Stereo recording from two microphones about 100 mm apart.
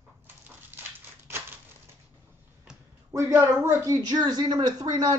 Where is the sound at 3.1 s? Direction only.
30° right (ahead or behind).